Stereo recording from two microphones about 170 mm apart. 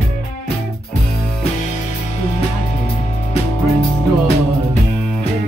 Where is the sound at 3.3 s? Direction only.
35° left (ahead or behind).